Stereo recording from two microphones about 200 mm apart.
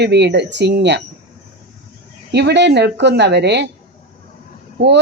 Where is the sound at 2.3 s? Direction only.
60° right (ahead or behind).